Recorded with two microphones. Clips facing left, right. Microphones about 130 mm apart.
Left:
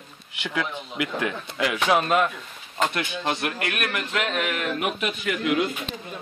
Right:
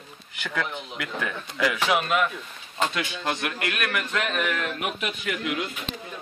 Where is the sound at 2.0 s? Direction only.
35° left (ahead or behind).